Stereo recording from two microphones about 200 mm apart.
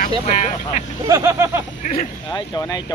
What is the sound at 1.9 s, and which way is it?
Speech, 30° left (ahead or behind).